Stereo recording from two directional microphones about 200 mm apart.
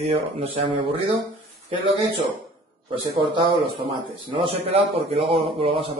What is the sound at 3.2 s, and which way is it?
A man's voice, 25° right (ahead or behind).